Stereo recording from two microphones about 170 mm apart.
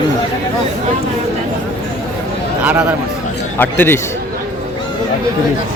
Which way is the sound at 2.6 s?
10° right (ahead or behind).